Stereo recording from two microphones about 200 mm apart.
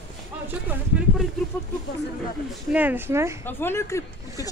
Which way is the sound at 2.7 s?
10° right (ahead or behind).